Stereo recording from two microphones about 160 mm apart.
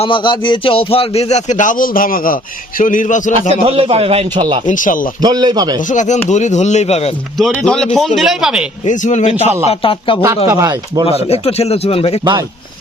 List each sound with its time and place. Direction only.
0.0 s a man's voice: 30° left (ahead or behind); by 3.5 s 50° left (ahead or behind)
3.5 s a man's voice: 40° right (ahead or behind)
4.6 s speech: 55° left (ahead or behind)
5.2 s a man's voice: 25° right (ahead or behind)
5.9 s a man's voice: 50° left (ahead or behind)
7.6 s a man's voice: 5° left (ahead or behind)
8.8 s a man's voice: 50° left (ahead or behind)
9.6 s a man's voice: 35° left (ahead or behind)
10.5 s a man's voice: 20° right (ahead or behind)
11.0 s a man's voice: 40° left (ahead or behind)
12.2 s a man's voice: 25° right (ahead or behind)